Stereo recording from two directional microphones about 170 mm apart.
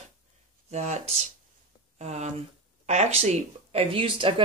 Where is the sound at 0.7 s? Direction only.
40° right (ahead or behind).